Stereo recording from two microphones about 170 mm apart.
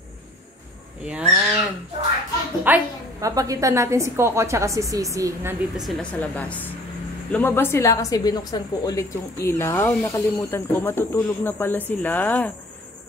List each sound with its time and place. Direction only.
1.0 s speech: 5° right (ahead or behind)
2.6 s a woman's voice: 15° right (ahead or behind)
5.9 s a woman's voice: 10° left (ahead or behind)